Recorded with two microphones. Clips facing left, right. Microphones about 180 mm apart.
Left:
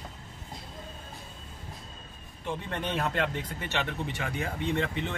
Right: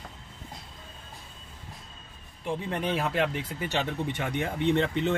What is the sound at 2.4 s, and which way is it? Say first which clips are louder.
Speech: right 3 dB; 10° right (ahead or behind).